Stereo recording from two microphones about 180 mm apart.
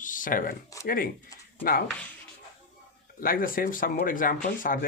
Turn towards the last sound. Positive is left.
turn(degrees=50)  # may be behind; listen again after turning